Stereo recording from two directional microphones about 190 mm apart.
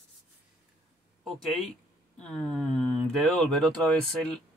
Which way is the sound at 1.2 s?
Centre (ahead or behind).